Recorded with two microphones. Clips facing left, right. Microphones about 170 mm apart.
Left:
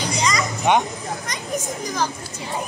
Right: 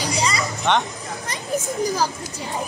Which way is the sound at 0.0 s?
35° right (ahead or behind).